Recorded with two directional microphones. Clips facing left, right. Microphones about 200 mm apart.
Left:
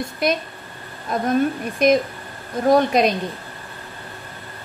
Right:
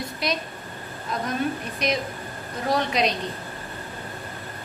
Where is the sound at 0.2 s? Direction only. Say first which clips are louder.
Left 7 dB; 50° left (ahead or behind).